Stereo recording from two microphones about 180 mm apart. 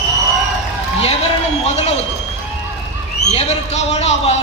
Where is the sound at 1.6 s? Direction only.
35° left (ahead or behind).